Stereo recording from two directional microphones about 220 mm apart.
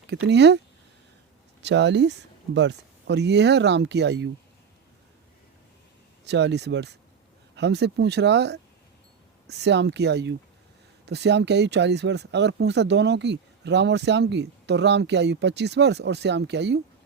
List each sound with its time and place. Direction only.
0.1 s speech: 50° right (ahead or behind)
1.6 s speech: 50° right (ahead or behind)
6.2 s speech: 50° right (ahead or behind)